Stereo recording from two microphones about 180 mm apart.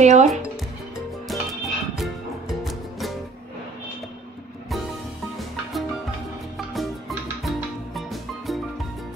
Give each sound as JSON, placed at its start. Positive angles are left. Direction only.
{"t": 0.0, "sound": "speech", "side_deg": -40}
{"t": 1.2, "sound": "music", "side_deg": 0}
{"t": 5.4, "sound": "music", "side_deg": 0}